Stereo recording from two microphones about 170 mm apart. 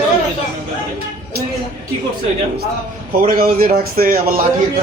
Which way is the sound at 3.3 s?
55° right (ahead or behind).